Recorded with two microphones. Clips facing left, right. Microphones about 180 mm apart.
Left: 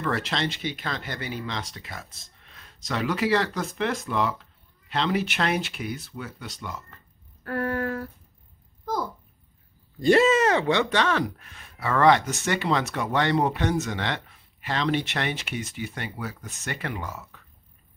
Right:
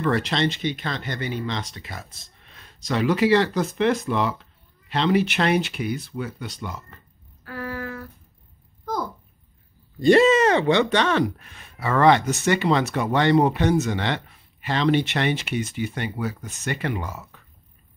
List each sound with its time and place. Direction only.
0.0 s speech: centre (ahead or behind)
7.4 s a sound: 55° left (ahead or behind)
10.0 s speech: 5° left (ahead or behind)